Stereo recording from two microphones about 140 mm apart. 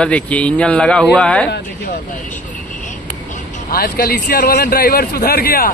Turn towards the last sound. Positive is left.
turn(degrees=90)